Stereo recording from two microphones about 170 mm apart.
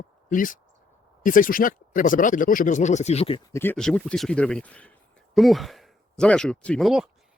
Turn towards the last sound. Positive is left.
turn(degrees=0)  # may be behind; listen again after turning